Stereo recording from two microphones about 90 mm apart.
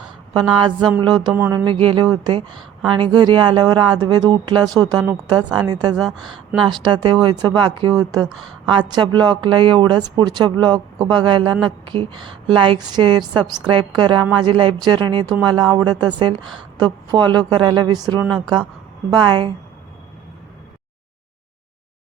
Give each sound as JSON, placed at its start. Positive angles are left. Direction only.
{"t": 0.5, "sound": "a woman's voice", "side_deg": -60}
{"t": 1.3, "sound": "a sound", "side_deg": -20}
{"t": 1.6, "sound": "speech", "side_deg": -75}
{"t": 2.9, "sound": "a woman's voice", "side_deg": -60}
{"t": 6.1, "sound": "a woman's voice", "side_deg": -5}
{"t": 6.6, "sound": "a woman's voice", "side_deg": -55}
{"t": 7.9, "sound": "a woman's voice", "side_deg": -40}
{"t": 8.3, "sound": "a woman's voice", "side_deg": 0}
{"t": 8.6, "sound": "a woman's voice", "side_deg": -60}